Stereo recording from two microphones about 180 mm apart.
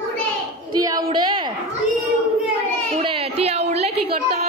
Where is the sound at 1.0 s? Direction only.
30° right (ahead or behind).